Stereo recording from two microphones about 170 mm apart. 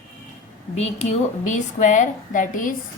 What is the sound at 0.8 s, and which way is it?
A woman's voice, 40° left (ahead or behind).